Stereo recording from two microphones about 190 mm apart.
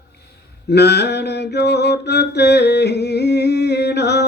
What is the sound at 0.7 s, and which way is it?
Mantra, 60° left (ahead or behind).